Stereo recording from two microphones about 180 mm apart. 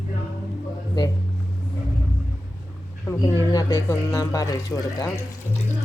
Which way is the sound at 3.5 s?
20° left (ahead or behind).